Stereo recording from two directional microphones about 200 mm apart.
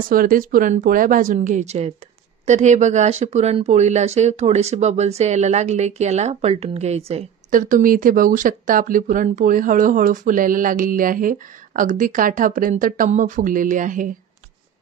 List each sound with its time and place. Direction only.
0.1 s speech: 45° right (ahead or behind)